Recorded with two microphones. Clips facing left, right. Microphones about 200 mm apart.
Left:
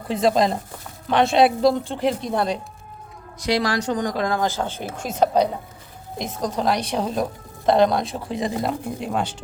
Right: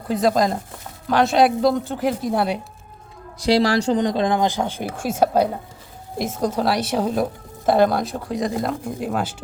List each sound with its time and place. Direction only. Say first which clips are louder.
0.1 s a woman's voice: even; centre (ahead or behind)
3.4 s a woman's voice: right 5 dB; 30° right (ahead or behind); by 9.3 s 5° right (ahead or behind)